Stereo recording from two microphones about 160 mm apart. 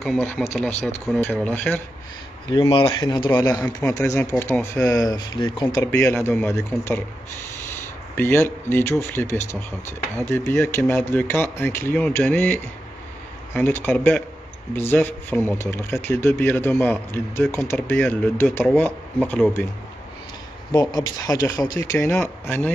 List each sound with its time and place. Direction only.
0.0 s speech: centre (ahead or behind)
2.7 s speech: 25° left (ahead or behind)
3.3 s speech: 10° left (ahead or behind); by 5.9 s 25° left (ahead or behind)
5.9 s speech: 15° left (ahead or behind)
8.2 s speech: 15° left (ahead or behind)
20.7 s speech: 25° left (ahead or behind)